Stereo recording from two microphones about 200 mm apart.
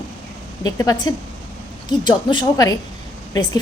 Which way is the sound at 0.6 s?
20° left (ahead or behind).